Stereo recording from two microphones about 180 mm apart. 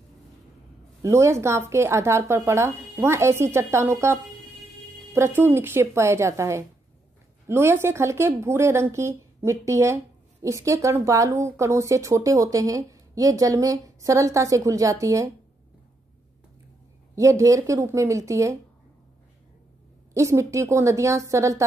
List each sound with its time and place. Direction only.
1.0 s speech: 15° right (ahead or behind)
17.1 s speech: 15° right (ahead or behind)
20.2 s speech: 15° right (ahead or behind)